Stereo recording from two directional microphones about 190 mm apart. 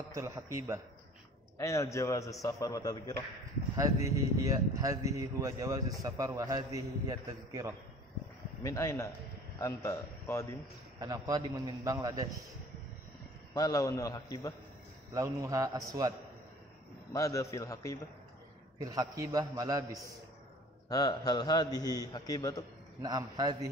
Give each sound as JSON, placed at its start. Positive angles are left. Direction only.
{"t": 0.1, "sound": "speech", "side_deg": -15}
{"t": 1.6, "sound": "a man's voice", "side_deg": 15}
{"t": 3.7, "sound": "speech", "side_deg": -15}
{"t": 8.6, "sound": "a man's voice", "side_deg": 15}
{"t": 11.0, "sound": "a man's voice", "side_deg": -20}
{"t": 13.5, "sound": "a man's voice", "side_deg": 20}
{"t": 15.1, "sound": "speech", "side_deg": -15}
{"t": 17.1, "sound": "a man's voice", "side_deg": 15}
{"t": 18.8, "sound": "a man's voice", "side_deg": -20}
{"t": 20.9, "sound": "a man's voice", "side_deg": 20}
{"t": 23.0, "sound": "a man's voice", "side_deg": -20}